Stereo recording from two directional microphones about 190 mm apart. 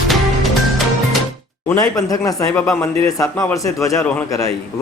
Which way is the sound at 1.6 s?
20° left (ahead or behind).